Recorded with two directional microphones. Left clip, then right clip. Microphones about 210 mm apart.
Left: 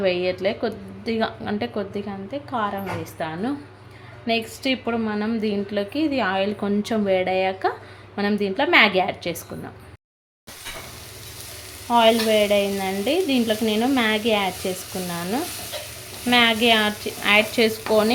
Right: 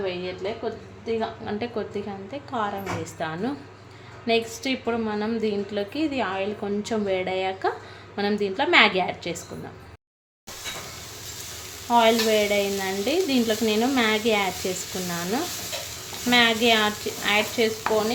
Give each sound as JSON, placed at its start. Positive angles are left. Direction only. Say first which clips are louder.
{"t": 0.0, "sound": "a woman's voice", "louder": "left 8 dB", "side_deg": 40}
{"t": 1.5, "sound": "stir", "louder": "left 2 dB", "side_deg": 20}
{"t": 11.9, "sound": "stir", "louder": "left 2 dB", "side_deg": 5}